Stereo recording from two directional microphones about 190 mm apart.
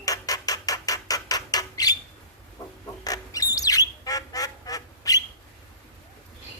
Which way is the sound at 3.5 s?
20° left (ahead or behind).